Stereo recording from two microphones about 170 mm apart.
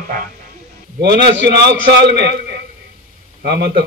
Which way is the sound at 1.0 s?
75° right (ahead or behind).